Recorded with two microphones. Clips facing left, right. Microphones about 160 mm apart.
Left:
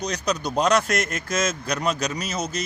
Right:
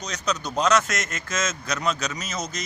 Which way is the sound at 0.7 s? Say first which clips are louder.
Even; 35° left (ahead or behind).